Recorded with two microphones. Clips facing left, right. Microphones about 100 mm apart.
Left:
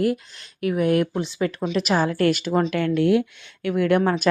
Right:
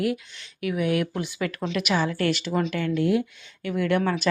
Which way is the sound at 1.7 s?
40° left (ahead or behind).